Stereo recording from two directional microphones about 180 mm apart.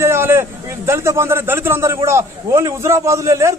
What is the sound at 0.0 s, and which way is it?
A man's voice, 15° right (ahead or behind).